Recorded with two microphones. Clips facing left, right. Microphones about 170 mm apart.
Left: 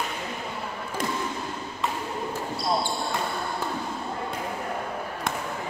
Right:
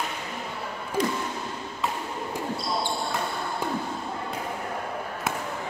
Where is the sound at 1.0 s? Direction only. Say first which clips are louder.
Right 5 dB; 50° left (ahead or behind).